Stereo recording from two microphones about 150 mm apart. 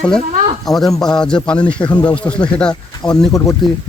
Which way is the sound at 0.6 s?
Centre (ahead or behind).